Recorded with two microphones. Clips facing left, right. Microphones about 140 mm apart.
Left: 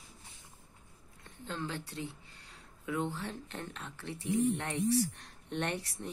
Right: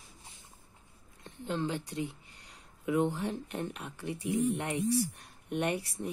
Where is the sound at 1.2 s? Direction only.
20° right (ahead or behind).